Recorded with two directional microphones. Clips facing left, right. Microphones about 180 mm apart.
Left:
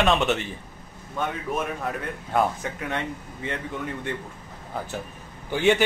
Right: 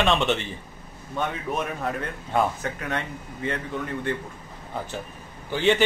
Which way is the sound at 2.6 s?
20° left (ahead or behind).